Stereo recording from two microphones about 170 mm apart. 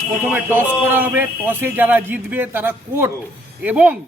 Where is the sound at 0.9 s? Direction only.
10° right (ahead or behind).